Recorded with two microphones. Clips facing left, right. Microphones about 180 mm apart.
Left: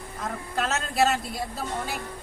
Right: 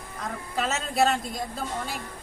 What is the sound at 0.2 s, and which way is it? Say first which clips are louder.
Speech: left 1 dB; centre (ahead or behind).